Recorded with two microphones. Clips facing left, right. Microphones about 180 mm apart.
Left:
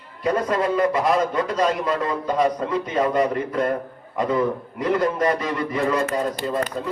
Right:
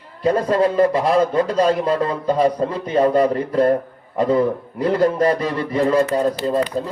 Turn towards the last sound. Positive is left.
turn(degrees=-30)  # may be behind; listen again after turning